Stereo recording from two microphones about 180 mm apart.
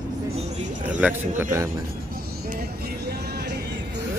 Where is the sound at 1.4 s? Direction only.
15° right (ahead or behind).